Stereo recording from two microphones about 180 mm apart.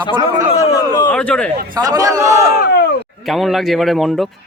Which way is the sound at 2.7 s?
70° left (ahead or behind).